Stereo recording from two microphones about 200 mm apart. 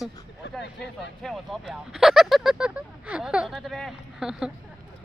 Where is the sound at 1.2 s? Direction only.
Centre (ahead or behind).